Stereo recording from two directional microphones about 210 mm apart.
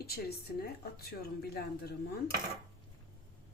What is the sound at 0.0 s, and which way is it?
A woman's voice, 50° left (ahead or behind).